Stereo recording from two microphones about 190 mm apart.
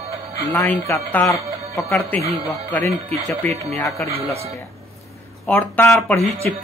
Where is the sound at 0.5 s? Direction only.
10° left (ahead or behind).